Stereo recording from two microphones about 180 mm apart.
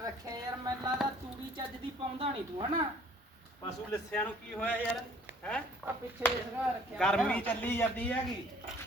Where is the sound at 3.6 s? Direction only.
15° left (ahead or behind).